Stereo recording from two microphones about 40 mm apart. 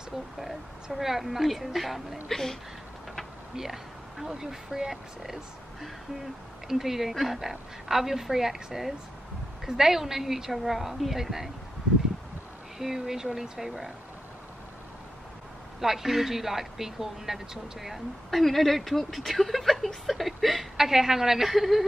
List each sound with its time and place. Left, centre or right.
0.9 s speech: centre
2.2 s speech: centre
3.5 s speech: centre
12.7 s speech: centre
15.8 s speech: centre
20.7 s speech: centre